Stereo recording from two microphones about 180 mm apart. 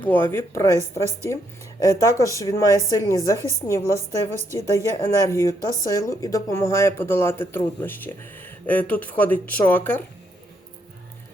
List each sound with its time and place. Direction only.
0.0 s speech: 10° left (ahead or behind)
1.8 s speech: 20° left (ahead or behind)